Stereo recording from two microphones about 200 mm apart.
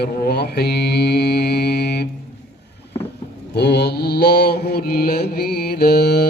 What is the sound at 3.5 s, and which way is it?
Mantra, 55° left (ahead or behind).